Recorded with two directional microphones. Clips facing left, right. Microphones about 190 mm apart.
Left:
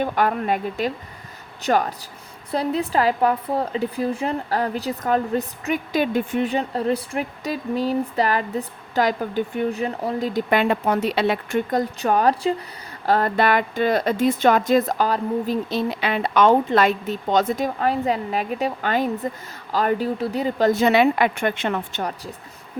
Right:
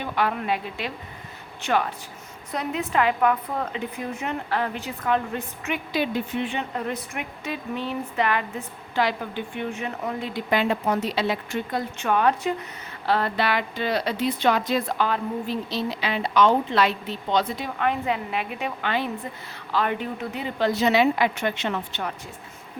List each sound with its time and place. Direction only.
0.0 s speech: 45° left (ahead or behind)
10.5 s speech: 60° left (ahead or behind); by 12.6 s 30° left (ahead or behind)
13.1 s speech: 45° left (ahead or behind)